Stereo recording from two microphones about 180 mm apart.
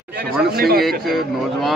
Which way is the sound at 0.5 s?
60° right (ahead or behind).